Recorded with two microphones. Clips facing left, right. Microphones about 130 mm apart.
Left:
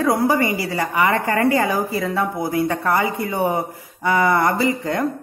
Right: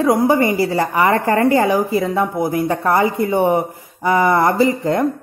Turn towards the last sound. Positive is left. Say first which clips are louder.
# right 5 dB
turn(degrees=-25)  # may be behind; listen again after turning